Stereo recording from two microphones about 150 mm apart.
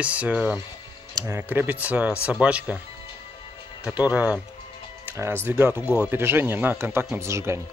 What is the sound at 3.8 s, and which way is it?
Speech, 10° right (ahead or behind).